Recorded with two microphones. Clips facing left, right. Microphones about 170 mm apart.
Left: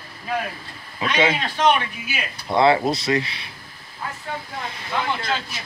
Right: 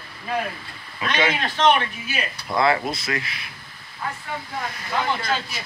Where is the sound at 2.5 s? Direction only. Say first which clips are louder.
Left 4 dB; 30° left (ahead or behind).